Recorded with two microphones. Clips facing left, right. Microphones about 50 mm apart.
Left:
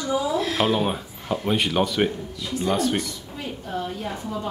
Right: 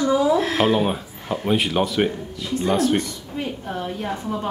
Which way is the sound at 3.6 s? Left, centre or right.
Right.